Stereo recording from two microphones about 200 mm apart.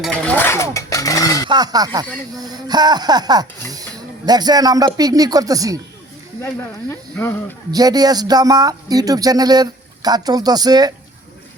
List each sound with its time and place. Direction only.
0.0 s a sound: 5° left (ahead or behind)
1.5 s speech: 20° right (ahead or behind)
7.2 s speech: 10° left (ahead or behind)
7.7 s speech: 20° right (ahead or behind)